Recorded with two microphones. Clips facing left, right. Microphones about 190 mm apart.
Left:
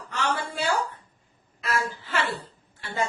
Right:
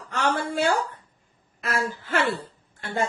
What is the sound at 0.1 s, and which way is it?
A woman's voice, 50° right (ahead or behind).